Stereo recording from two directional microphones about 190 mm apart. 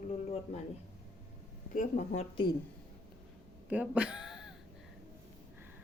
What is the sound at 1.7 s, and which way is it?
Speech, 40° left (ahead or behind).